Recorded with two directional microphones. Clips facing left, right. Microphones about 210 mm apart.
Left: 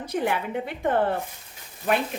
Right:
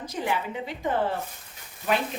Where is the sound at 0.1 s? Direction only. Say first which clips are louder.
Left 4 dB; 60° left (ahead or behind).